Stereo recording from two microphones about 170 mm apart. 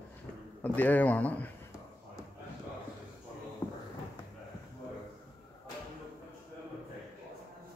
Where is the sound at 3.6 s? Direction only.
10° left (ahead or behind).